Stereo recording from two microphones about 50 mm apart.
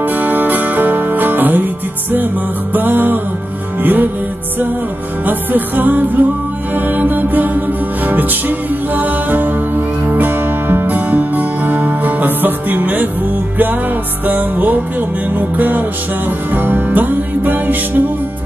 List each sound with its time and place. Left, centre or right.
0.0 s music: right
2.7 s music: right
5.2 s music: right
14.2 s music: right